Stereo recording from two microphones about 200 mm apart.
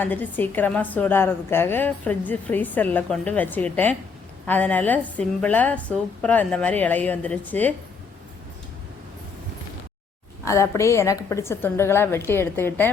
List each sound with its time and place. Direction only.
0.0 s a woman's voice: 10° left (ahead or behind)
10.4 s a woman's voice: 15° left (ahead or behind)